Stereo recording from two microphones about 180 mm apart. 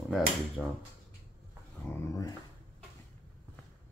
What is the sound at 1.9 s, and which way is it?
Speech, 15° left (ahead or behind).